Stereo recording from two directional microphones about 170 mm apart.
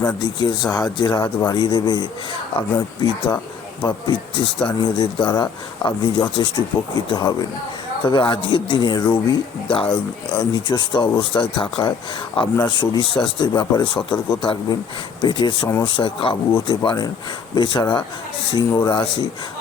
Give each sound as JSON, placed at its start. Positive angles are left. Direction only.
{"t": 0.2, "sound": "speech", "side_deg": 25}